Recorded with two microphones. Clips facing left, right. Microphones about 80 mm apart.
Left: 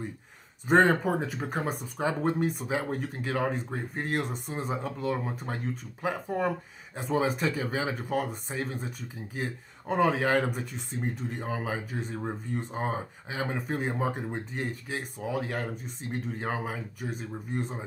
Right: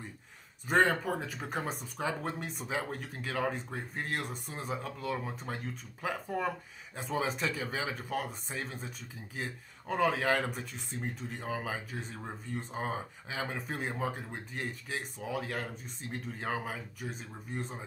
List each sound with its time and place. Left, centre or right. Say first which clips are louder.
0.7 s speech: left 5 dB; left